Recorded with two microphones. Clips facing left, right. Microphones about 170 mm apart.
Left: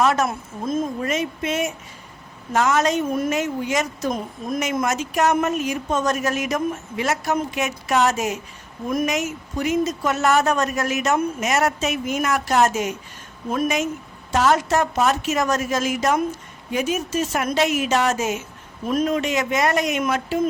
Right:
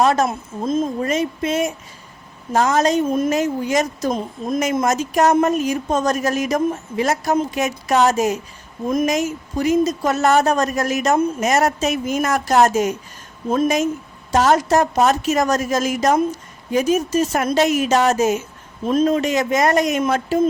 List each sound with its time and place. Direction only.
0.0 s a woman's voice: 35° right (ahead or behind)
1.0 s speech: 35° right (ahead or behind)
4.1 s a woman's voice: 25° right (ahead or behind)
4.9 s speech: 40° right (ahead or behind)
14.3 s speech: 40° right (ahead or behind)